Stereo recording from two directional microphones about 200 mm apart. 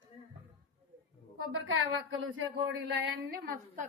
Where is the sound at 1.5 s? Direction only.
85° right; by 3.4 s 60° right (ahead or behind).